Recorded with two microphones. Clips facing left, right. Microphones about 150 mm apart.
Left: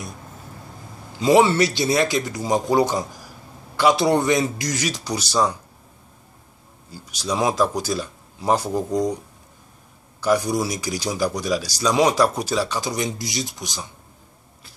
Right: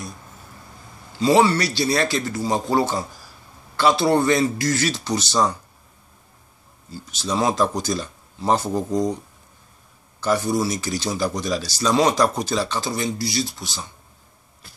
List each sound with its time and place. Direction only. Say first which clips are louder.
1.1 s speech: left 1 dB; 20° left (ahead or behind)
6.9 s speech: even; 10° left (ahead or behind)
10.2 s speech: left 1 dB; 15° left (ahead or behind)